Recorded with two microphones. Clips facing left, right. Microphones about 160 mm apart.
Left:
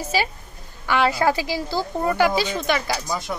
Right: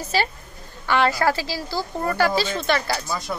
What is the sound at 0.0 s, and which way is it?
A woman's voice, 10° left (ahead or behind).